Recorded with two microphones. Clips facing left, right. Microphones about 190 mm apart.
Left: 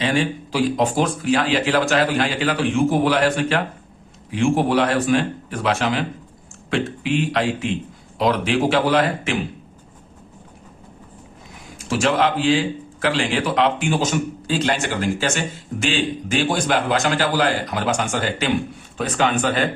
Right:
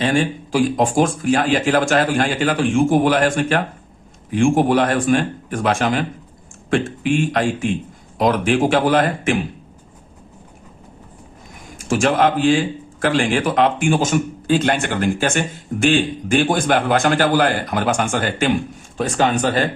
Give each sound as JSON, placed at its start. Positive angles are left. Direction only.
{"t": 0.0, "sound": "speech", "side_deg": -50}
{"t": 11.9, "sound": "speech", "side_deg": -50}